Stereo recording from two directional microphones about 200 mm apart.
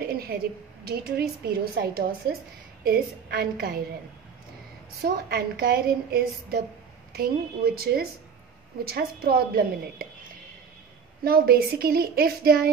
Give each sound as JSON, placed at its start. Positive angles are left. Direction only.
{"t": 0.0, "sound": "a woman's voice", "side_deg": -50}
{"t": 5.0, "sound": "a woman's voice", "side_deg": -50}
{"t": 11.2, "sound": "a woman's voice", "side_deg": -50}